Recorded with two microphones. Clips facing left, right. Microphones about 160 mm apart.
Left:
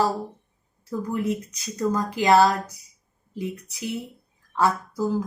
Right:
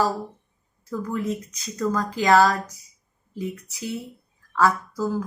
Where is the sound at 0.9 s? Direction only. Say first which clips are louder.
Left 1 dB; 15° left (ahead or behind).